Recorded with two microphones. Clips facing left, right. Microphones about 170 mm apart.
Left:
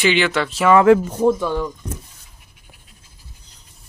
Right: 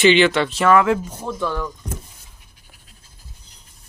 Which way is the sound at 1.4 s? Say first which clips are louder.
Left 2 dB; 15° left (ahead or behind).